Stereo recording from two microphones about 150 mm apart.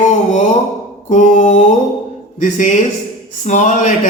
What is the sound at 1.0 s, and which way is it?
Speech, 55° left (ahead or behind).